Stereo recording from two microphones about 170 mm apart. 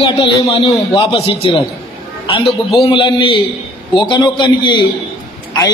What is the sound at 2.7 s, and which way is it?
A man's voice, 30° left (ahead or behind).